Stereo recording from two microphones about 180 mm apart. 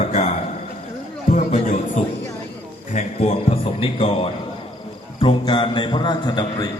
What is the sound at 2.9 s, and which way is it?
A man's voice, 35° left (ahead or behind).